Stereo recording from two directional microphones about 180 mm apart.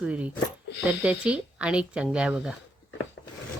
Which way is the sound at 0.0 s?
5° right (ahead or behind).